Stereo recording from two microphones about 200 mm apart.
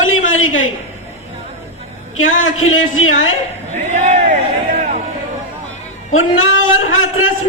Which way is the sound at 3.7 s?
35° right (ahead or behind).